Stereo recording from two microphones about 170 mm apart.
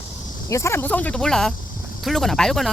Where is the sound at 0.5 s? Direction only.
15° left (ahead or behind).